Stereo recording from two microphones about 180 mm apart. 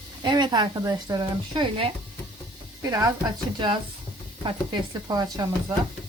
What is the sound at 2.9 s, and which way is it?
Speech, 20° right (ahead or behind).